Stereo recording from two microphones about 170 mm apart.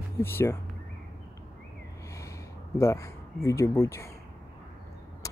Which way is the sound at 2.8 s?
15° left (ahead or behind).